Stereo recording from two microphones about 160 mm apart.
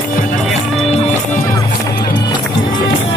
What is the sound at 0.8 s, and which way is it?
Music, 40° left (ahead or behind).